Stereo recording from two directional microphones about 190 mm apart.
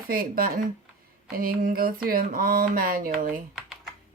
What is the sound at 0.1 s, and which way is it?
A woman's voice, 50° right (ahead or behind).